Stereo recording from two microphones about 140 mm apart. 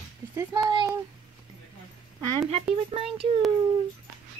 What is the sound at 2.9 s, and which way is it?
Speech, 40° right (ahead or behind).